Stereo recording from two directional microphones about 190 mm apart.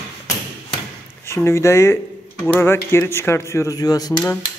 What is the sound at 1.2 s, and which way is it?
Speech, 15° left (ahead or behind).